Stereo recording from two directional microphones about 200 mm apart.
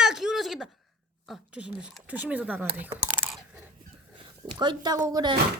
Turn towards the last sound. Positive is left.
turn(degrees=-20)  # may be behind; listen again after turning